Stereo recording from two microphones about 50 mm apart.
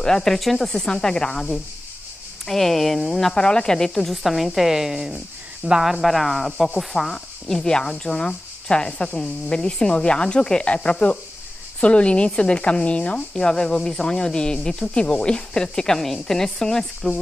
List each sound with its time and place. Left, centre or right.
0.0 s a woman's voice: centre